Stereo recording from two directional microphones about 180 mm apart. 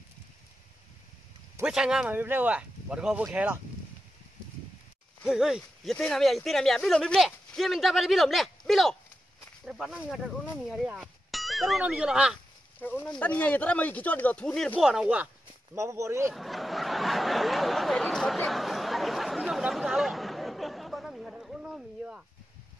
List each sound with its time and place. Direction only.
1.6 s speech: 5° right (ahead or behind)
5.2 s speech: centre (ahead or behind)
12.8 s speech: 10° left (ahead or behind)
15.7 s speech: 15° right (ahead or behind)
16.3 s a sound: centre (ahead or behind)